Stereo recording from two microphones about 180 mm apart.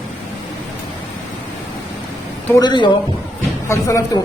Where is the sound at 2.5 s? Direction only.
25° left (ahead or behind).